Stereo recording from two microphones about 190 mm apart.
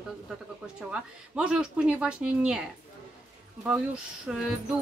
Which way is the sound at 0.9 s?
5° right (ahead or behind).